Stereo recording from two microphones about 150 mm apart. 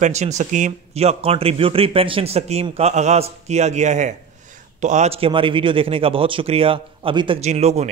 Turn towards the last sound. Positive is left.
turn(degrees=-45)  # may be behind; listen again after turning